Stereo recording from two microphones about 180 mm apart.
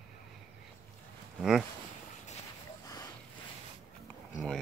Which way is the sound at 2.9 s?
20° left (ahead or behind).